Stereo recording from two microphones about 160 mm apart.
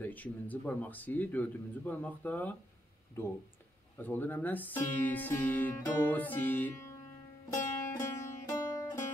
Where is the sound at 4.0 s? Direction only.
10° left (ahead or behind).